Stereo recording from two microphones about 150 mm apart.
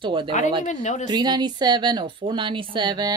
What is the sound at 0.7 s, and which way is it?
Speech, 55° left (ahead or behind).